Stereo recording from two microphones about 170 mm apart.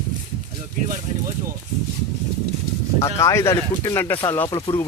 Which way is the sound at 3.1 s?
20° left (ahead or behind).